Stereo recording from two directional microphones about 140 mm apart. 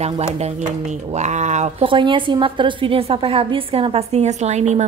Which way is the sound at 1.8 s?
35° right (ahead or behind).